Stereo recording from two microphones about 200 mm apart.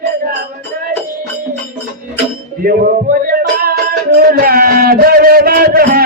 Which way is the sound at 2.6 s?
45° right (ahead or behind).